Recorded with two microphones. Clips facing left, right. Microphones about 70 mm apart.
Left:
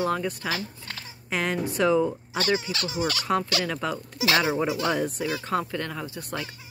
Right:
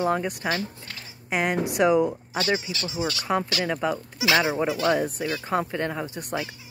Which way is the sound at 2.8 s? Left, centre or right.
Left.